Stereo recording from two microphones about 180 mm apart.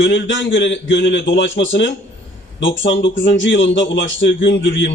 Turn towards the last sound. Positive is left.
turn(degrees=90)